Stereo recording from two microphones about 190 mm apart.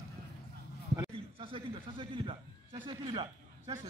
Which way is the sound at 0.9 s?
25° right (ahead or behind).